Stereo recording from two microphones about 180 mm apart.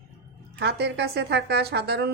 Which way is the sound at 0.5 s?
65° right (ahead or behind).